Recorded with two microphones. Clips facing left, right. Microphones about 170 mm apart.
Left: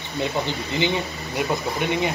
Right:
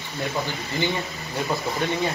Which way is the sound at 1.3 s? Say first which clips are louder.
Left 2 dB; 15° left (ahead or behind).